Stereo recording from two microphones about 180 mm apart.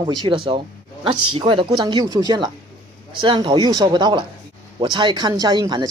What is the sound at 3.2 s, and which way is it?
Speech, 30° right (ahead or behind).